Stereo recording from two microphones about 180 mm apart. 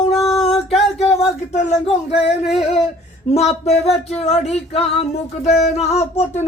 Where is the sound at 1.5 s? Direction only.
40° left (ahead or behind).